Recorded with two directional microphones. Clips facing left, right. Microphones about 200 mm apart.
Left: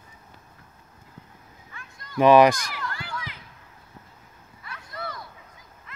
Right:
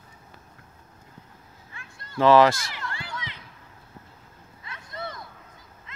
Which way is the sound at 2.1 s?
15° left (ahead or behind).